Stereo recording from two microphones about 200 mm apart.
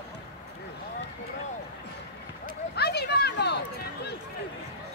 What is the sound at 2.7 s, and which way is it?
Speech, 55° left (ahead or behind).